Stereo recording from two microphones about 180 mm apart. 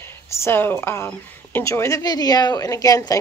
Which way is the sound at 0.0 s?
15° left (ahead or behind).